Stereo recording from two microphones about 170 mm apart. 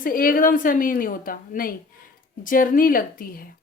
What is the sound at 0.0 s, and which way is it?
A woman's voice, 55° left (ahead or behind).